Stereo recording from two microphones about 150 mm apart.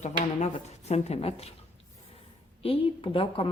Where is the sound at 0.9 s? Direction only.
45° left (ahead or behind).